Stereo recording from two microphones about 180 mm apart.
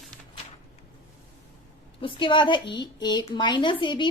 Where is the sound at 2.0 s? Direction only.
30° left (ahead or behind).